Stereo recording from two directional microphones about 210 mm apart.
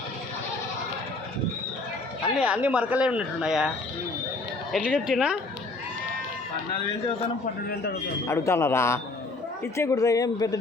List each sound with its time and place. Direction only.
2.4 s speech: 5° right (ahead or behind)
4.7 s speech: 5° left (ahead or behind)
8.3 s speech: 15° left (ahead or behind)